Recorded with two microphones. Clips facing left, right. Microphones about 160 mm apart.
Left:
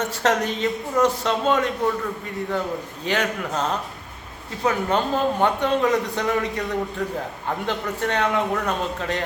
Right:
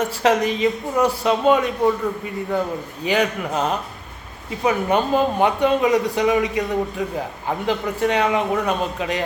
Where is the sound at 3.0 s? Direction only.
15° right (ahead or behind).